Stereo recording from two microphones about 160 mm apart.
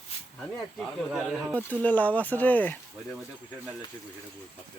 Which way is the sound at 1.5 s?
10° left (ahead or behind).